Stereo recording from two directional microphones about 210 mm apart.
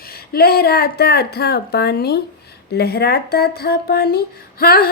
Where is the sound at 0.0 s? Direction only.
45° left (ahead or behind).